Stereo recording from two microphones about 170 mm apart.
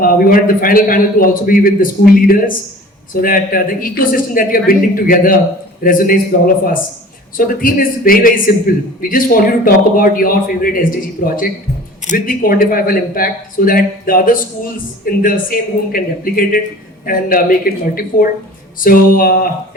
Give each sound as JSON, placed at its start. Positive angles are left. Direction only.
{"t": 0.0, "sound": "a man's voice", "side_deg": 55}
{"t": 7.3, "sound": "a man's voice", "side_deg": 55}